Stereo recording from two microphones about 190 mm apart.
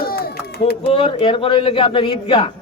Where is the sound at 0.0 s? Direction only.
50° left (ahead or behind).